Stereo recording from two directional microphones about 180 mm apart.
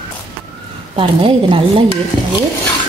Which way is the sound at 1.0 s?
30° right (ahead or behind).